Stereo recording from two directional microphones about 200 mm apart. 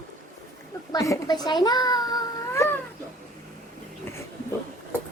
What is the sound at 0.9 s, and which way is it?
A child's voice, 15° left (ahead or behind).